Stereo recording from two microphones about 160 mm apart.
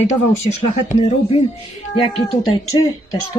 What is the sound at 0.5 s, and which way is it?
Speech, 40° left (ahead or behind).